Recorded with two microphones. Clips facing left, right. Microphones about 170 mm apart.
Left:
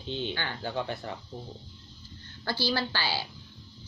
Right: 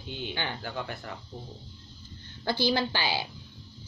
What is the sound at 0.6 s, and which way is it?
Speech, 25° left (ahead or behind).